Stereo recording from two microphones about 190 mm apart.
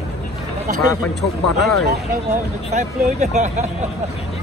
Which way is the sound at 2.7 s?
35° right (ahead or behind).